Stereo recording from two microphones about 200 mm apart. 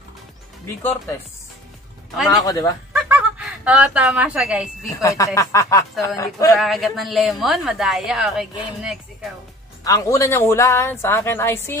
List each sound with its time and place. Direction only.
2.2 s speech: 15° left (ahead or behind)
2.9 s speech: 5° right (ahead or behind)
5.0 s speech: 15° left (ahead or behind)
6.6 s a woman's voice: centre (ahead or behind)
9.8 s speech: 15° left (ahead or behind)